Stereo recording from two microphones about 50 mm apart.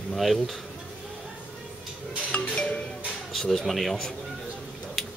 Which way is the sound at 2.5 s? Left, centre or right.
Centre.